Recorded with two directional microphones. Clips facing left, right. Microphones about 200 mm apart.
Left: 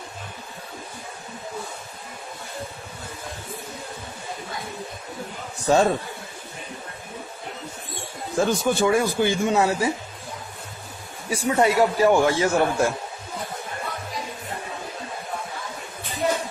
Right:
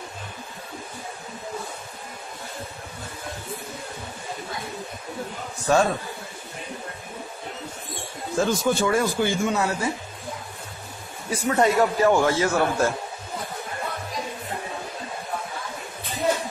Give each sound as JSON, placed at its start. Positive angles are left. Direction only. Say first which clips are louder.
{"t": 5.7, "sound": "a man's voice", "louder": "left 1 dB", "side_deg": 25}
{"t": 8.4, "sound": "a man's voice", "louder": "left 1 dB", "side_deg": 15}
{"t": 11.2, "sound": "a man's voice", "louder": "left 1 dB", "side_deg": 10}